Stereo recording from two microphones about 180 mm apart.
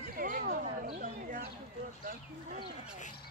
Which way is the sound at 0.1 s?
50° right (ahead or behind).